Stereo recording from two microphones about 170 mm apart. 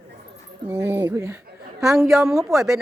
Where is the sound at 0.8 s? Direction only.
10° right (ahead or behind).